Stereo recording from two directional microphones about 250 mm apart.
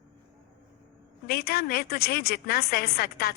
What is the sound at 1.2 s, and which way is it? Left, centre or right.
A woman's voice, left.